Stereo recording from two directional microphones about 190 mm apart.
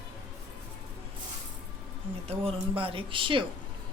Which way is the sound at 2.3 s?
30° right (ahead or behind).